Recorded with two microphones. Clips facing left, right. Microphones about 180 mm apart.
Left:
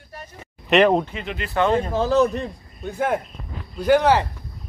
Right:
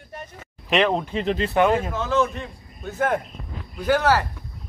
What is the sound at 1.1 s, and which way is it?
Speech, 35° right (ahead or behind).